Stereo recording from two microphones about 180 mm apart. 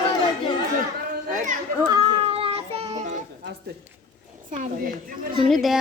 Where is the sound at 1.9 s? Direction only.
30° right (ahead or behind).